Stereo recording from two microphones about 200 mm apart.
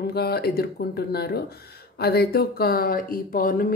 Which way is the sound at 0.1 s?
50° left (ahead or behind).